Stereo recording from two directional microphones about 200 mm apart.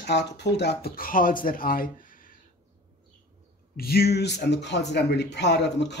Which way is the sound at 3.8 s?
50° left (ahead or behind).